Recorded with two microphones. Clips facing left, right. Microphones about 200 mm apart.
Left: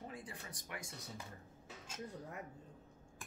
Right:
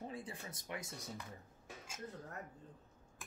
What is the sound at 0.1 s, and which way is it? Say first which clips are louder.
Speech: right 3 dB; 25° right (ahead or behind).